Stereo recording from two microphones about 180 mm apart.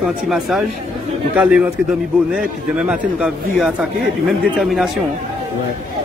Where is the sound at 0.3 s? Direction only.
Centre (ahead or behind).